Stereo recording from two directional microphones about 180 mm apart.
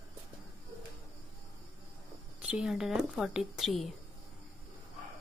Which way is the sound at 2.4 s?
5° right (ahead or behind).